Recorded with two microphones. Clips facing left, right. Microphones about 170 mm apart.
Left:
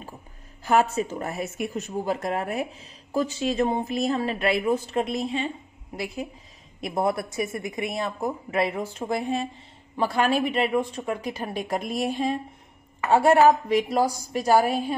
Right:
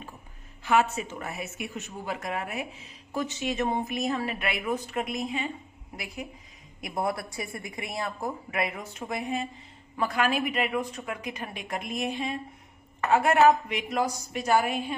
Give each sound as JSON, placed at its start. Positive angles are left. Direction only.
{"t": 0.7, "sound": "speech", "side_deg": 40}
{"t": 6.8, "sound": "speech", "side_deg": 25}